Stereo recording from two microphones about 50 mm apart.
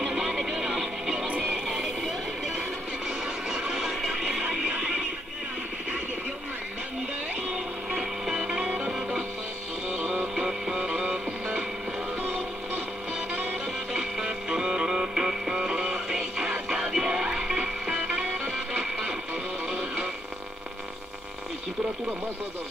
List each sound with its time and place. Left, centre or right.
0.0 s music: centre
4.4 s a sound: centre
4.6 s neigh: centre
7.9 s music: centre
8.5 s music: centre
9.9 s music: right
10.3 s music: centre
14.2 s music: centre